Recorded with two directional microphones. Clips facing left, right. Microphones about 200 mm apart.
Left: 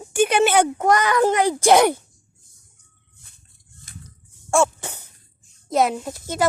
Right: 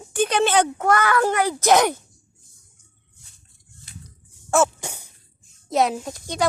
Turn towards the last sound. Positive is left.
turn(degrees=5)  # may be behind; listen again after turning